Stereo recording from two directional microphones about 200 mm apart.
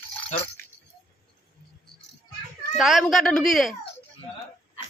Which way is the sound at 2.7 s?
Centre (ahead or behind).